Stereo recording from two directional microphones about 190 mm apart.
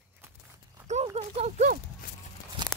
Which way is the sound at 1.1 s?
35° right (ahead or behind).